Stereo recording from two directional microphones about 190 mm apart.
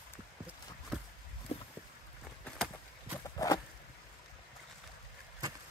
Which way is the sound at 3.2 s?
20° left (ahead or behind).